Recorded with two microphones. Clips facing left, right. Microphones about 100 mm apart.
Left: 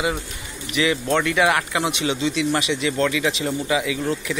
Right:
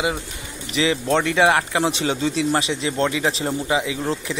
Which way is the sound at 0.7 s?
30° right (ahead or behind).